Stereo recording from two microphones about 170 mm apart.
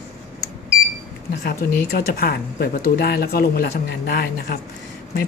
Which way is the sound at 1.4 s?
65° left (ahead or behind).